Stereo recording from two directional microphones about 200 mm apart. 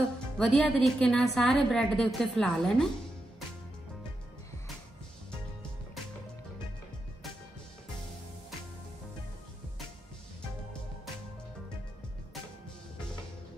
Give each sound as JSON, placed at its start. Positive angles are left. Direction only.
{"t": 0.4, "sound": "a woman's voice", "side_deg": 5}